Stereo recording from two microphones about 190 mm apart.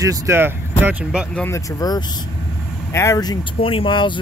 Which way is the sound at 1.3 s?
10° left (ahead or behind).